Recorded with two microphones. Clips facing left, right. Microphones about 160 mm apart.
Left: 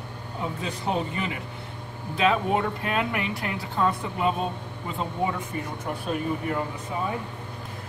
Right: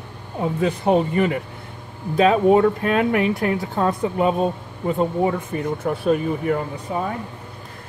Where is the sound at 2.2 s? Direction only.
45° right (ahead or behind).